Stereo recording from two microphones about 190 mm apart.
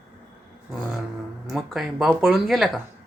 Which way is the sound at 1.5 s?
Centre (ahead or behind).